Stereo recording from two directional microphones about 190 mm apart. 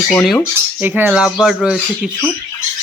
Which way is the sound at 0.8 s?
5° right (ahead or behind).